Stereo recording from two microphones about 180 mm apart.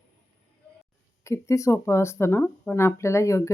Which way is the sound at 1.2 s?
15° left (ahead or behind).